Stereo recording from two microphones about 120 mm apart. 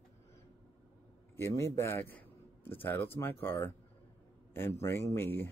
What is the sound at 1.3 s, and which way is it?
A man's voice, 25° left (ahead or behind).